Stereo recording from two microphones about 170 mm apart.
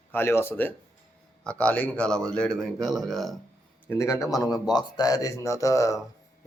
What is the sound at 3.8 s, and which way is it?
Speech, 15° left (ahead or behind).